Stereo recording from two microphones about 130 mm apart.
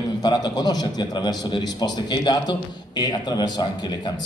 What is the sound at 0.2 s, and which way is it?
A man's voice, 30° left (ahead or behind).